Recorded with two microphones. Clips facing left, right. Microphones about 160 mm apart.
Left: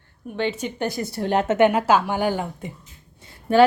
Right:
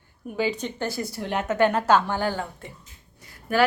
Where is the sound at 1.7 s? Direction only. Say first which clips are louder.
Left 2 dB; 10° left (ahead or behind).